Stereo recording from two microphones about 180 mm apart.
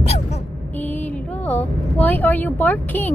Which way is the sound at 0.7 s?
10° left (ahead or behind).